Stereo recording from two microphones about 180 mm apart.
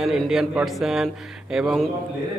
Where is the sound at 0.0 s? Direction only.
Centre (ahead or behind).